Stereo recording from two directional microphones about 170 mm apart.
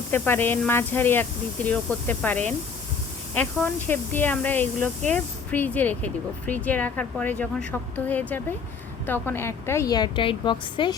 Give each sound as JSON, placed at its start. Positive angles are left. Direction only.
{"t": 0.1, "sound": "a woman's voice", "side_deg": 10}